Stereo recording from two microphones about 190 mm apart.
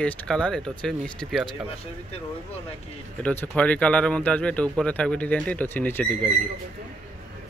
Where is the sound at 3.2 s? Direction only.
5° left (ahead or behind).